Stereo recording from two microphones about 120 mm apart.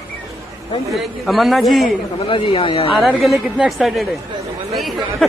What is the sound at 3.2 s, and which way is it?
Speech, centre (ahead or behind).